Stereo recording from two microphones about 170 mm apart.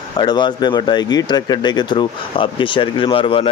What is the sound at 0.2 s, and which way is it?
Speech, 25° left (ahead or behind).